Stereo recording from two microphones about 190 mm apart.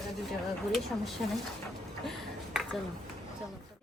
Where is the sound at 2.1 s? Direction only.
Centre (ahead or behind).